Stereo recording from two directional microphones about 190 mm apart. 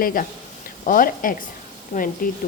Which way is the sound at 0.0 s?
50° left (ahead or behind).